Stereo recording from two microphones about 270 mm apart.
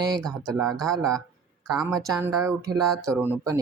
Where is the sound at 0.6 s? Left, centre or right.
Centre.